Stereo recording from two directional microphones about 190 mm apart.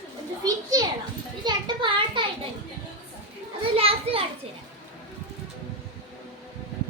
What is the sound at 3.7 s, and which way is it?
Children playing, 30° right (ahead or behind).